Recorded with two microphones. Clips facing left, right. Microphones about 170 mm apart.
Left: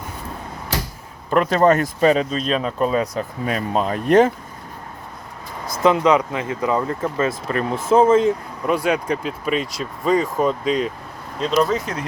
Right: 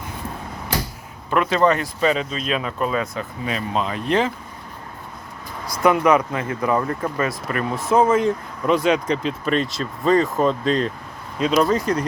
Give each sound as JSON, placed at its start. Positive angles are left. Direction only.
{"t": 1.3, "sound": "speech", "side_deg": 45}
{"t": 5.7, "sound": "speech", "side_deg": 25}
{"t": 8.6, "sound": "speech", "side_deg": 10}
{"t": 11.3, "sound": "speech", "side_deg": -5}